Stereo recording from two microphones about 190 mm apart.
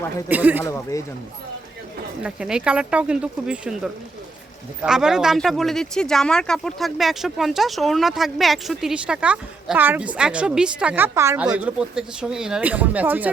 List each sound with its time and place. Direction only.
0.3 s speech: 10° right (ahead or behind)
0.6 s speech: 15° left (ahead or behind)
2.2 s speech: 5° right (ahead or behind)
4.8 s speech: 5° right (ahead or behind)